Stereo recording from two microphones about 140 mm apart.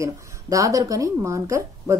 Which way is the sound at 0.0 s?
20° right (ahead or behind).